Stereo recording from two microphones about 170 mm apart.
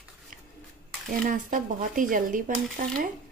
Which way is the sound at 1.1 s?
55° right (ahead or behind).